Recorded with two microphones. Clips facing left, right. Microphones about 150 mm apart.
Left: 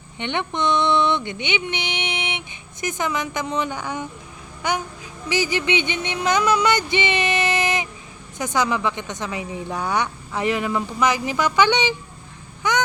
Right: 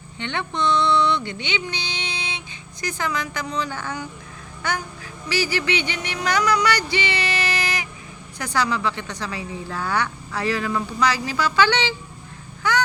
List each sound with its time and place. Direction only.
0.2 s a woman's voice: 20° left (ahead or behind)
5.3 s a sound: 20° left (ahead or behind)
8.4 s a woman's voice: 20° left (ahead or behind)
12.6 s honk: 20° left (ahead or behind)